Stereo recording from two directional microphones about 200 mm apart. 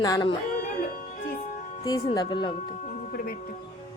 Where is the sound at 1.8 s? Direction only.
20° left (ahead or behind).